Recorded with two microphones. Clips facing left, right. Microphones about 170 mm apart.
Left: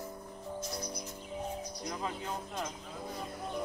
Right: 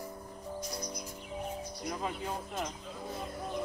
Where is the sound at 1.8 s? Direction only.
5° right (ahead or behind).